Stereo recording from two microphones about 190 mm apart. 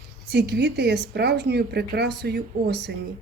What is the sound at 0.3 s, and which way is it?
Speech, 60° right (ahead or behind).